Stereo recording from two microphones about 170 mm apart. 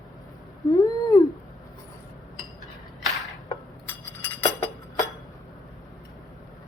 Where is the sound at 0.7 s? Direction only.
20° left (ahead or behind).